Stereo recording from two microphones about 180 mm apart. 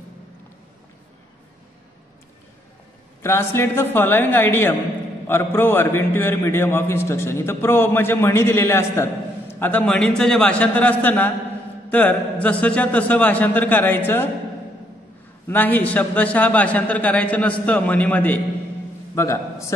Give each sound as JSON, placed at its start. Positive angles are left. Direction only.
{"t": 3.2, "sound": "a man's voice", "side_deg": 15}
{"t": 15.4, "sound": "a man's voice", "side_deg": 10}